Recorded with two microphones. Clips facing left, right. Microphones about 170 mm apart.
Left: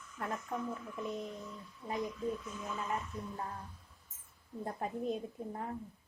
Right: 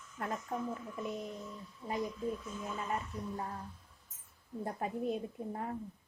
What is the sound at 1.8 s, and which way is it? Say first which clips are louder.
Speech: right 1 dB; 20° right (ahead or behind).